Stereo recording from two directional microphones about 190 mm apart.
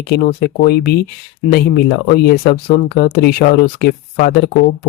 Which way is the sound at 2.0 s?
55° left (ahead or behind).